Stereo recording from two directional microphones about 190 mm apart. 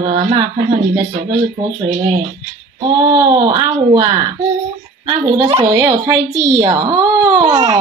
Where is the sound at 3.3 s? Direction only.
25° right (ahead or behind).